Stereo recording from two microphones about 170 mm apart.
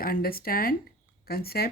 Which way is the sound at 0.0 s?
60° left (ahead or behind).